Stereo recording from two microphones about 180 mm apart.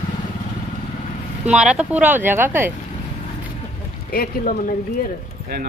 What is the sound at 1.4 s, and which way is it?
Speech, 5° right (ahead or behind).